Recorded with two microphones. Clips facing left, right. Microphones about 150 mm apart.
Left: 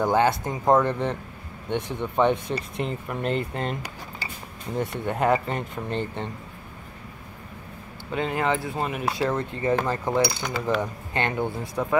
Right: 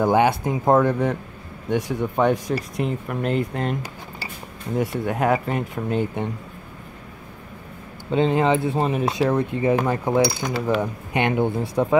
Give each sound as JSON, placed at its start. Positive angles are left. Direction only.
{"t": 0.0, "sound": "cutlery", "side_deg": -15}
{"t": 2.8, "sound": "speech", "side_deg": -5}
{"t": 4.7, "sound": "speech", "side_deg": -5}
{"t": 8.1, "sound": "speech", "side_deg": -25}
{"t": 9.2, "sound": "cutlery", "side_deg": -15}
{"t": 11.6, "sound": "speech", "side_deg": -30}